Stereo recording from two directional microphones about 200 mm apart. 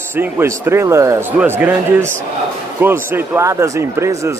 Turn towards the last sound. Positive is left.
turn(degrees=-15)  # may be behind; listen again after turning